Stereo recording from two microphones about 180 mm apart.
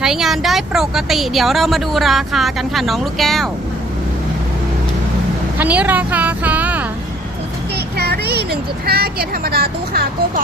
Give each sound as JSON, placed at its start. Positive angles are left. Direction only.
{"t": 0.0, "sound": "speech", "side_deg": 0}
{"t": 5.5, "sound": "a woman's voice", "side_deg": -10}
{"t": 7.9, "sound": "speech", "side_deg": -60}